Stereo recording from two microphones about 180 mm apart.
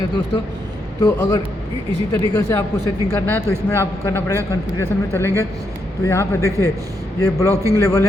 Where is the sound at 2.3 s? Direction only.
15° left (ahead or behind).